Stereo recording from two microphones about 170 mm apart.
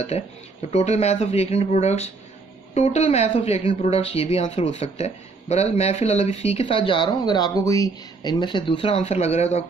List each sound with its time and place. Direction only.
0.7 s speech: 40° left (ahead or behind)